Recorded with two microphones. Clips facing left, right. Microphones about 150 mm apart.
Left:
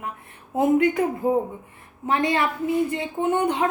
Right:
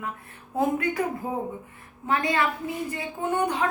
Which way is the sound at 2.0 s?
25° left (ahead or behind).